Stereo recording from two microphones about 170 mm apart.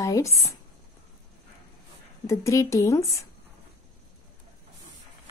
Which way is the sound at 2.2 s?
15° left (ahead or behind).